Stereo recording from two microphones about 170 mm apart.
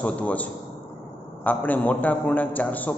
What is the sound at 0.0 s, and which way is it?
A man's voice, 10° left (ahead or behind).